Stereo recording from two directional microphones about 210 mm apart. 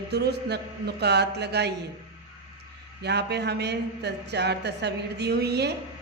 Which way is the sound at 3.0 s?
50° right (ahead or behind).